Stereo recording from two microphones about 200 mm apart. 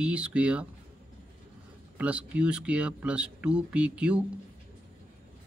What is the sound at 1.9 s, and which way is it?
Speech, 5° right (ahead or behind).